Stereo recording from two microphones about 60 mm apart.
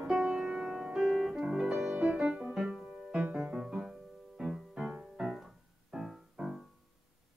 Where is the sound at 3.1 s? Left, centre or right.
Centre.